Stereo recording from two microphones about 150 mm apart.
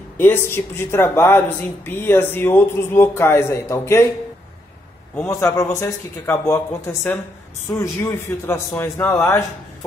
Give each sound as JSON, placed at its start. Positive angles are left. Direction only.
{"t": 0.2, "sound": "speech", "side_deg": 15}
{"t": 5.2, "sound": "a man's voice", "side_deg": 20}